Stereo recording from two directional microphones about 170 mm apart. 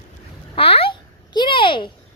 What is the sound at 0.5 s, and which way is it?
Babbling, 35° left (ahead or behind).